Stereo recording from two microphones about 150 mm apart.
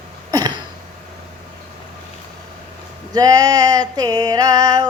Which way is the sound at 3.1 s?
25° right (ahead or behind).